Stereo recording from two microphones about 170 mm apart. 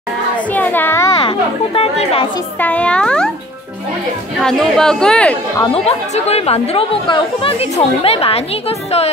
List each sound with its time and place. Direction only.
0.6 s a sound: 10° left (ahead or behind)
1.2 s speech: 30° left (ahead or behind)
2.6 s a child's voice: 10° left (ahead or behind)
4.4 s speech: 5° left (ahead or behind)
5.7 s speech: 40° left (ahead or behind)